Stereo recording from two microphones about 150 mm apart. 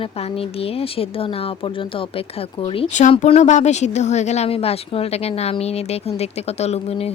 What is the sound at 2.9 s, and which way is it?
Speech, 55° left (ahead or behind).